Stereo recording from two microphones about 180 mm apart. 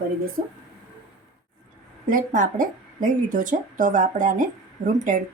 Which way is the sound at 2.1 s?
45° right (ahead or behind).